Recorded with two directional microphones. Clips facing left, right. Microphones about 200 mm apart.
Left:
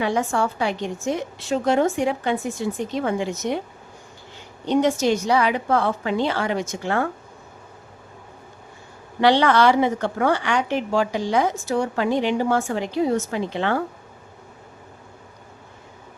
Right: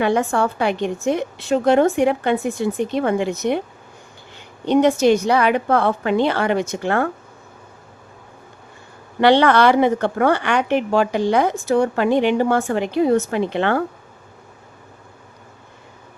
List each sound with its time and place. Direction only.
0.0 s a woman's voice: 60° right (ahead or behind)
4.6 s a woman's voice: 60° right (ahead or behind)
9.2 s a woman's voice: 60° right (ahead or behind)